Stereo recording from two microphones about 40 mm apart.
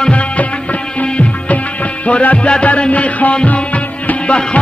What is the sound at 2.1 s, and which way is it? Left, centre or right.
Music, left.